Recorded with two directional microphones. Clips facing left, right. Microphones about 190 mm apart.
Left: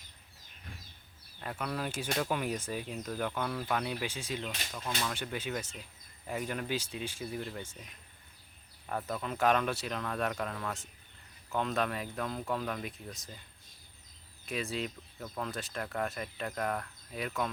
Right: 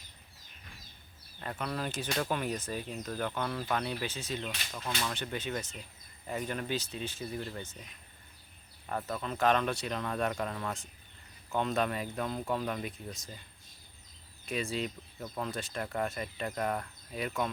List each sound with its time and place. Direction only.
1.4 s speech: 5° left (ahead or behind)
4.7 s speech: centre (ahead or behind)
8.9 s speech: centre (ahead or behind)
14.4 s speech: centre (ahead or behind)